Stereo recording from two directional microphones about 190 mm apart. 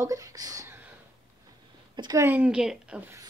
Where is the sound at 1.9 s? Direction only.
20° right (ahead or behind).